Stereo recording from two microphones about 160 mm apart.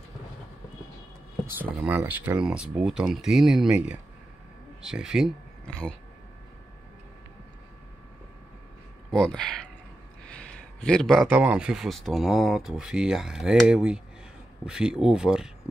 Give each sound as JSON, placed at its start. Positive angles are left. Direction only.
{"t": 1.4, "sound": "a man's voice", "side_deg": -10}
{"t": 5.7, "sound": "speech", "side_deg": 5}
{"t": 9.1, "sound": "a man's voice", "side_deg": 5}